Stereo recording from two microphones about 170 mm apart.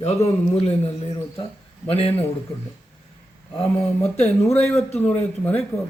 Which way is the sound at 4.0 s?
10° left (ahead or behind).